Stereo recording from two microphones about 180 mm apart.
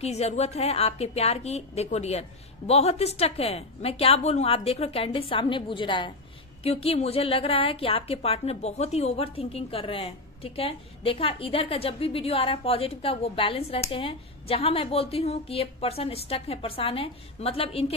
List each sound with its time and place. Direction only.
0.0 s a woman's voice: 35° left (ahead or behind)